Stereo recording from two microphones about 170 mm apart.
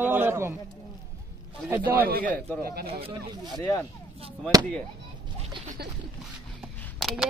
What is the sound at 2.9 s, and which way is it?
Speech, 35° right (ahead or behind).